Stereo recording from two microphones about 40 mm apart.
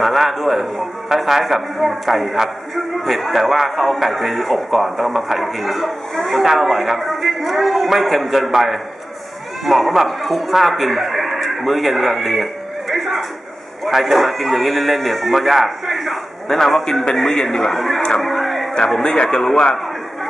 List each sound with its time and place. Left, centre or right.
0.0 s a man's voice: centre
9.7 s speech: centre
12.9 s a sound: centre
13.8 s a man's voice: centre
18.2 s a sound: centre
18.9 s a man's voice: centre
19.1 s speech: left